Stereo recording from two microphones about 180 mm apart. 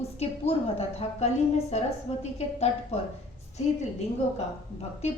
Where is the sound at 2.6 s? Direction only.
35° left (ahead or behind).